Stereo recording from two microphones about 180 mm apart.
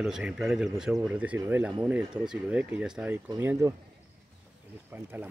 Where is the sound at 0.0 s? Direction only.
5° right (ahead or behind).